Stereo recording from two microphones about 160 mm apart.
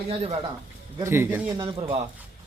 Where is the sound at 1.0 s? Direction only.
15° right (ahead or behind).